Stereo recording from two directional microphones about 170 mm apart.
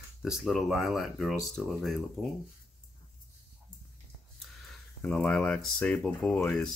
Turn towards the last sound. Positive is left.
turn(degrees=5)  # may be behind; listen again after turning